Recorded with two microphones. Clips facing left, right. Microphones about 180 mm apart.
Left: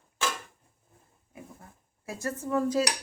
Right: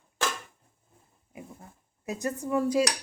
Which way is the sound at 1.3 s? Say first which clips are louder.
Right 2 dB; 20° right (ahead or behind).